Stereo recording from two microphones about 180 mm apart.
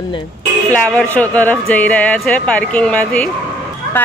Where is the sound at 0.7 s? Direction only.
5° left (ahead or behind).